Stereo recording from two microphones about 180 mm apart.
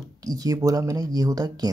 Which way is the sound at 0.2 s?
20° right (ahead or behind).